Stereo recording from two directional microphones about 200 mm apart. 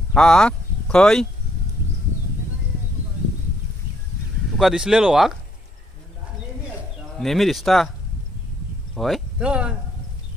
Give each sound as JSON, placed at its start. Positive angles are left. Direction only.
{"t": 0.1, "sound": "speech", "side_deg": 5}
{"t": 4.6, "sound": "speech", "side_deg": 0}
{"t": 7.2, "sound": "speech", "side_deg": 0}
{"t": 8.9, "sound": "speech", "side_deg": 0}